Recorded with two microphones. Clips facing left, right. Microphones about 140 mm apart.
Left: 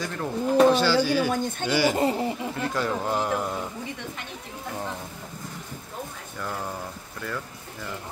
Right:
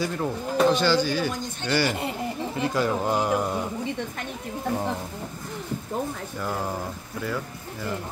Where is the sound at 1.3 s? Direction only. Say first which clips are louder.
Left 6 dB; 55° left (ahead or behind).